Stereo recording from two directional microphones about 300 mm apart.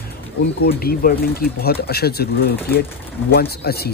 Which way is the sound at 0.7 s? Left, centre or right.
Left.